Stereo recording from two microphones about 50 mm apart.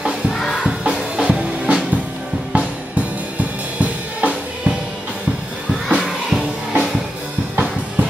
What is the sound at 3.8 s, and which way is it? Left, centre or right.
Drum kit, right.